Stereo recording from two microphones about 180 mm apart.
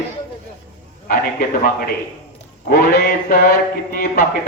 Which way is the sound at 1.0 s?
55° left (ahead or behind).